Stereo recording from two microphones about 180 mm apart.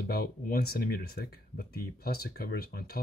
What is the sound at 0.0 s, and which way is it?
Speech, 55° left (ahead or behind).